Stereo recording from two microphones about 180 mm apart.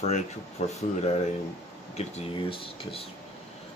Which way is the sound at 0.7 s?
35° left (ahead or behind).